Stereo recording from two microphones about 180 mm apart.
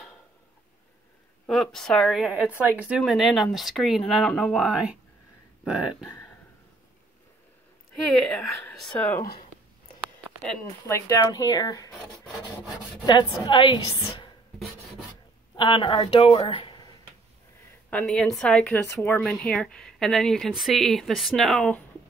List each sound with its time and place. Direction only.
1.5 s speech: centre (ahead or behind)
8.1 s speech: 5° left (ahead or behind)
9.2 s speech: 55° left (ahead or behind)
10.6 s speech: 15° left (ahead or behind)
15.5 s speech: 25° left (ahead or behind)
17.8 s a woman's voice: 5° left (ahead or behind)